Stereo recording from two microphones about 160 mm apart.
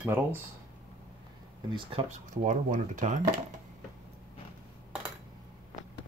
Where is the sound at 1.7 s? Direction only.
35° right (ahead or behind); by 3.3 s 50° right (ahead or behind).